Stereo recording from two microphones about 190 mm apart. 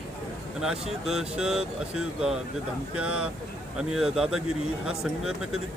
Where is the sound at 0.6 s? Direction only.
Centre (ahead or behind).